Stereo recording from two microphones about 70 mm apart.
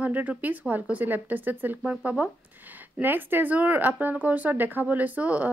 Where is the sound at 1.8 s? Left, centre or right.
Centre.